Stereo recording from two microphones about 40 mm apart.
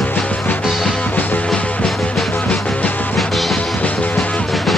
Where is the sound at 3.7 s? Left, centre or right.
Left.